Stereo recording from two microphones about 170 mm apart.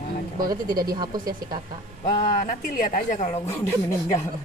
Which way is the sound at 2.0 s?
25° left (ahead or behind).